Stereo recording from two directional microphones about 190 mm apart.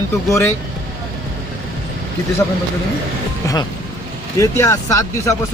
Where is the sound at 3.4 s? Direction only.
20° left (ahead or behind).